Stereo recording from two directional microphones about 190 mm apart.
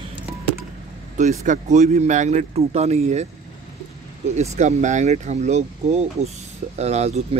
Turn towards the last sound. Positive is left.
turn(degrees=-35)  # may be behind; listen again after turning